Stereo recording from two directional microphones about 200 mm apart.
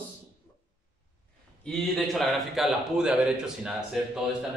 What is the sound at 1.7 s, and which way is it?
Speech, centre (ahead or behind).